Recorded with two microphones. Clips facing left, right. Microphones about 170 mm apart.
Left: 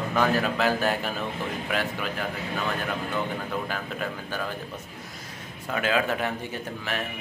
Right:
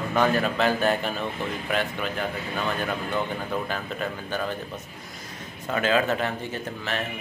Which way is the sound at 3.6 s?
5° left (ahead or behind).